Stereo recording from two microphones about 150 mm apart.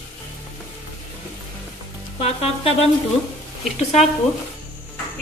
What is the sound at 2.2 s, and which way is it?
Music, 40° left (ahead or behind).